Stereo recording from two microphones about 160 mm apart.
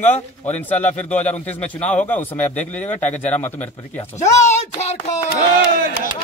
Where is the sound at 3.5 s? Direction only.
45° left (ahead or behind).